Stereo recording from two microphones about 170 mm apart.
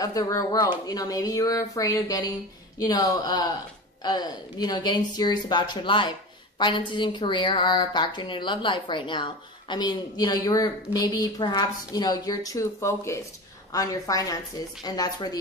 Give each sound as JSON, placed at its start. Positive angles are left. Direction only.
{"t": 0.0, "sound": "a woman's voice", "side_deg": 20}